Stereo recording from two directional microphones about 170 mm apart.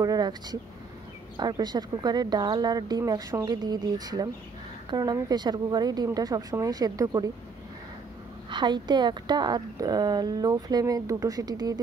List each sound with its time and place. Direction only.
0.0 s a woman's voice: 25° right (ahead or behind)
8.5 s a woman's voice: 25° right (ahead or behind)